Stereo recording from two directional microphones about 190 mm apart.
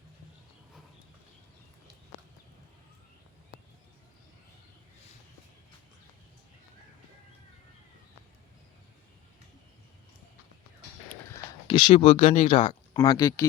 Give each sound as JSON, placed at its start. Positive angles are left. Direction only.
{"t": 11.3, "sound": "speech", "side_deg": 25}